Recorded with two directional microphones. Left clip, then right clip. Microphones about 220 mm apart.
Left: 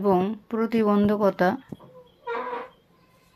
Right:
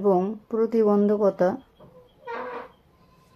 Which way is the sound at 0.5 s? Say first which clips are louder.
Right 3 dB; 45° left (ahead or behind).